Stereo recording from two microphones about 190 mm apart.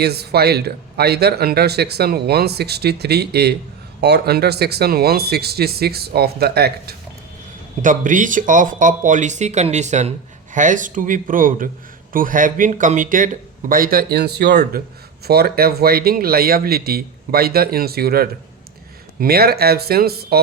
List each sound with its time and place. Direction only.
0.0 s speech: 60° right (ahead or behind)
7.8 s speech: 45° right (ahead or behind)